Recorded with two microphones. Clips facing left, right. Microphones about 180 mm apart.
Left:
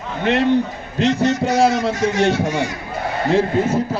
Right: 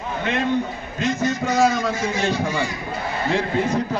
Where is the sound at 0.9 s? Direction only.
70° left (ahead or behind).